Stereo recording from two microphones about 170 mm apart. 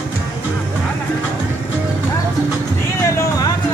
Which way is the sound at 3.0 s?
15° left (ahead or behind).